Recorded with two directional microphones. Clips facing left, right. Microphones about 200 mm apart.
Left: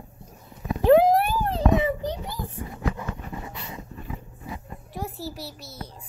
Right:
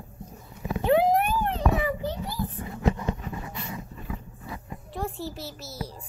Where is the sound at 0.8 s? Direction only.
40° left (ahead or behind).